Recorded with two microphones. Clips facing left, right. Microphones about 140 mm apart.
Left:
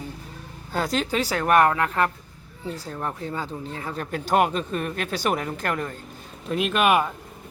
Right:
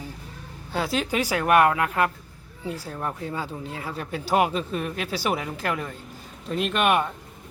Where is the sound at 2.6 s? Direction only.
10° right (ahead or behind).